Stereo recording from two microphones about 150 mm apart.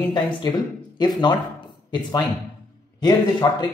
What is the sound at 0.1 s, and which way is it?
A man's voice, 30° left (ahead or behind).